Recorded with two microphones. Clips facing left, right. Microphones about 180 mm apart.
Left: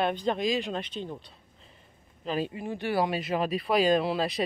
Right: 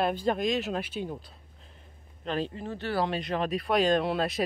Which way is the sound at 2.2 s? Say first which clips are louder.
Left 1 dB; 10° left (ahead or behind).